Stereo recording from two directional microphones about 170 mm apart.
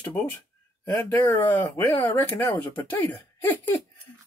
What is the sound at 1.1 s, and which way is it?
Speech, 15° left (ahead or behind).